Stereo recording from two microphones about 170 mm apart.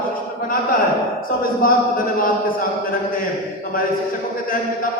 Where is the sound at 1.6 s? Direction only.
55° left (ahead or behind).